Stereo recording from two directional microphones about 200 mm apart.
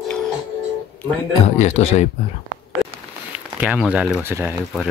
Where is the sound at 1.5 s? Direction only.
35° left (ahead or behind).